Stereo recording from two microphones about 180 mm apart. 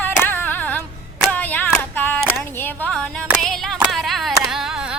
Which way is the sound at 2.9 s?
Centre (ahead or behind).